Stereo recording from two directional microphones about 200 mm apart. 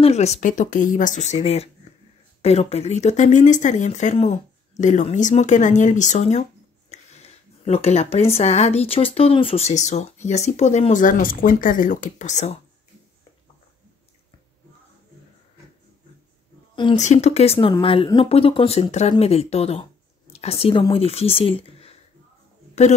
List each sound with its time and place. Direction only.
0.0 s speech: 35° left (ahead or behind)
16.9 s speech: 35° left (ahead or behind)